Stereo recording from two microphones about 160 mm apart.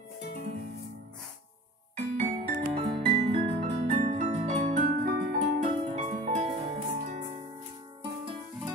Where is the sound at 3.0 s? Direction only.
40° right (ahead or behind); by 5.3 s 60° right (ahead or behind).